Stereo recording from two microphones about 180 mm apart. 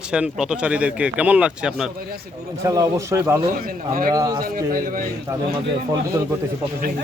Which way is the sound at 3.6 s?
50° right (ahead or behind).